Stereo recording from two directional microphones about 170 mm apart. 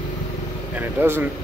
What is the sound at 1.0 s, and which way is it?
Speech, 10° right (ahead or behind).